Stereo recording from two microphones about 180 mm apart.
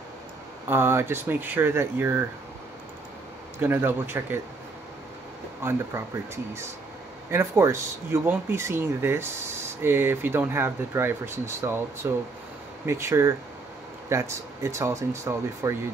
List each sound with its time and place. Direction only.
0.7 s speech: 15° right (ahead or behind)
3.5 s speech: 10° right (ahead or behind)
5.6 s speech: 15° right (ahead or behind)